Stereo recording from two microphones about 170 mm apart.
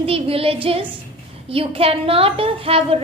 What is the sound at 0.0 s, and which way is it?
A woman's voice, 35° right (ahead or behind).